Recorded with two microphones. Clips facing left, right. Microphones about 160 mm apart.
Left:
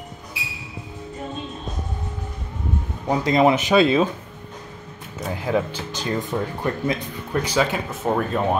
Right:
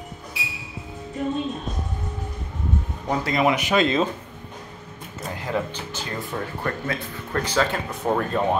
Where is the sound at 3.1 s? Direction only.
20° left (ahead or behind).